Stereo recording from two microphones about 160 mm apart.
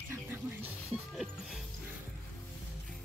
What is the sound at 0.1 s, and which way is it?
Music, 15° right (ahead or behind).